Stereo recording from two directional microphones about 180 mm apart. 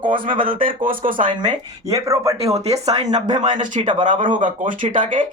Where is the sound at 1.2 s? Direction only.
25° right (ahead or behind).